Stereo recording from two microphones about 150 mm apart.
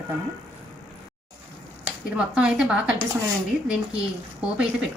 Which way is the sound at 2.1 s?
5° right (ahead or behind).